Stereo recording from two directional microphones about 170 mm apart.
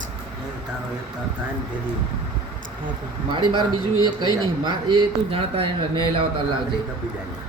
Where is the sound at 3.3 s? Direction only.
25° right (ahead or behind).